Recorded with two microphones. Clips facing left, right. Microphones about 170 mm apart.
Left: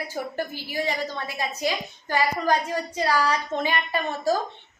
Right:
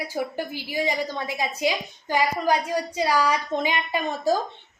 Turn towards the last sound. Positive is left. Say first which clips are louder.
# right 1 dB
turn(degrees=-15)  # may be behind; listen again after turning